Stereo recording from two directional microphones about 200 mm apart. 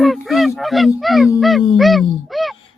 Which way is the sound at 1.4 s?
Centre (ahead or behind).